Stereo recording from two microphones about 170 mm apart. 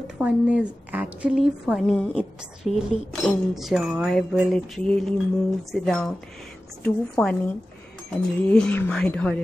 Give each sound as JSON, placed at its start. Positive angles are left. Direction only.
{"t": 0.0, "sound": "a woman's voice", "side_deg": -5}